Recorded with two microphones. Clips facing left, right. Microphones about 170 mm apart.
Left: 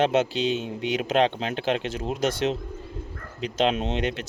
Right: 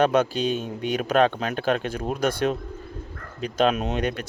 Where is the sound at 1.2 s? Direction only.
50° right (ahead or behind).